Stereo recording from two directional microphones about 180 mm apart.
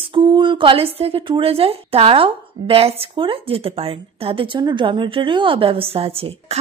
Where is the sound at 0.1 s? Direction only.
25° right (ahead or behind).